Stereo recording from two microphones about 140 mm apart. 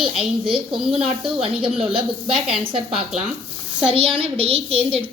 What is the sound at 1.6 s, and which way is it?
A child's voice, 40° right (ahead or behind).